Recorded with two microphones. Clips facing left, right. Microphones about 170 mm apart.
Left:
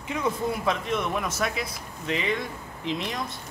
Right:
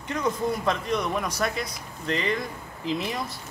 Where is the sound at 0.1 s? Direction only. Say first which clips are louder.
Right 1 dB; 5° left (ahead or behind).